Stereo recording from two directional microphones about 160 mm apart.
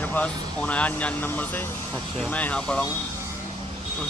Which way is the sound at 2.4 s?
10° left (ahead or behind).